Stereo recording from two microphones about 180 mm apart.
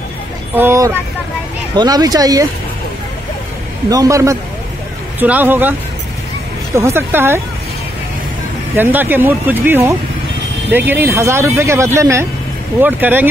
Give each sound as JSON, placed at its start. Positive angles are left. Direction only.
{"t": 0.6, "sound": "speech", "side_deg": -15}
{"t": 3.9, "sound": "speech", "side_deg": -20}
{"t": 8.7, "sound": "speech", "side_deg": -10}